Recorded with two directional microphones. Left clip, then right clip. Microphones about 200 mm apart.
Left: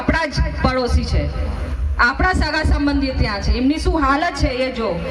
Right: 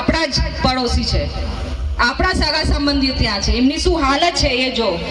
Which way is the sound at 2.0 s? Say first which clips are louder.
Even; 45° right (ahead or behind).